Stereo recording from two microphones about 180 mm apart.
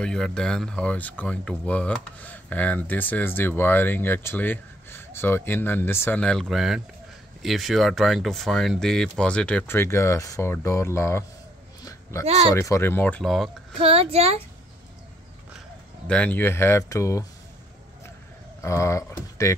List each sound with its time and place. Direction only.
0.0 s speech: 5° left (ahead or behind)
11.8 s a sound: 20° left (ahead or behind)
12.3 s a child's voice: 35° right (ahead or behind)
12.5 s speech: 15° left (ahead or behind)
13.7 s a child's voice: 35° right (ahead or behind)
16.1 s speech: 10° left (ahead or behind)
18.6 s speech: 15° left (ahead or behind)